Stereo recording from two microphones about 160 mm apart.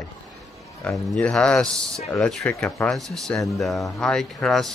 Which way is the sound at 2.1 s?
5° left (ahead or behind).